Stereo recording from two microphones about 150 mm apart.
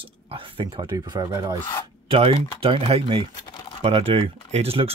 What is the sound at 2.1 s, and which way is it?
Speech, 40° right (ahead or behind).